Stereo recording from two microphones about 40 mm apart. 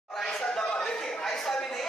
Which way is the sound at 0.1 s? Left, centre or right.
Centre.